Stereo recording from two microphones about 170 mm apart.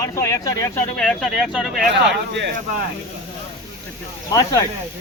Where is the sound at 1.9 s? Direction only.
90° right.